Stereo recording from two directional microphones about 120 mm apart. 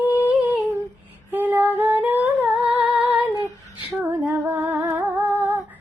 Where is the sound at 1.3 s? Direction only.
15° right (ahead or behind).